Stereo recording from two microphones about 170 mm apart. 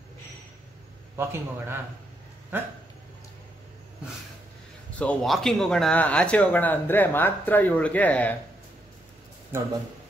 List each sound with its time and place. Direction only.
1.1 s a man's voice: 15° right (ahead or behind)
4.9 s speech: 5° left (ahead or behind)
9.5 s a man's voice: 15° right (ahead or behind)